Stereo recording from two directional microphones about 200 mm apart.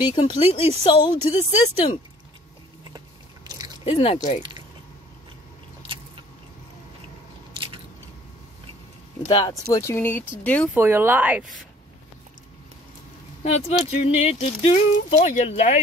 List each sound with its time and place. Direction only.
0.0 s speech: 25° left (ahead or behind)
3.4 s a sound: 20° right (ahead or behind)
3.8 s speech: 25° left (ahead or behind)
4.4 s squish: 25° right (ahead or behind)
5.8 s biting: 25° right (ahead or behind)
9.5 s speech: 15° left (ahead or behind)
10.7 s speech: 10° right (ahead or behind)
13.4 s speech: 30° left (ahead or behind)